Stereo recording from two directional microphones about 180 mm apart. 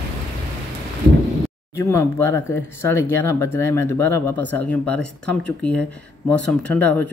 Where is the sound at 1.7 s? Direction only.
15° left (ahead or behind).